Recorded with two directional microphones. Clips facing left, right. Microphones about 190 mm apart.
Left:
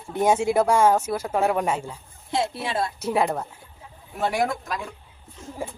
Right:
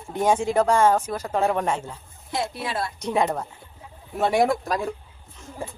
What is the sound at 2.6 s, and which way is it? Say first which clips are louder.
Speech: left 2 dB; 25° left (ahead or behind).